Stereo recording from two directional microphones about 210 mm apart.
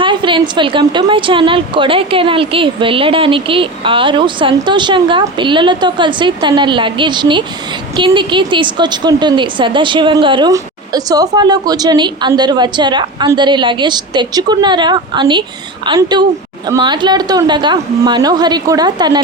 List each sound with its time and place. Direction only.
0.0 s a woman's voice: 20° right (ahead or behind)